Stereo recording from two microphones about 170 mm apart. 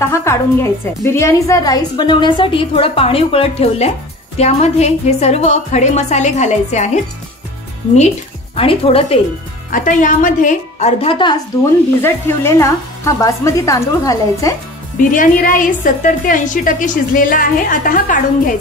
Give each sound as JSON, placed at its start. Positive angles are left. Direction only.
{"t": 0.0, "sound": "a woman's voice", "side_deg": 15}
{"t": 8.5, "sound": "a woman's voice", "side_deg": 35}
{"t": 9.7, "sound": "a woman's voice", "side_deg": 50}
{"t": 12.0, "sound": "speech", "side_deg": 15}
{"t": 15.0, "sound": "a woman's voice", "side_deg": 50}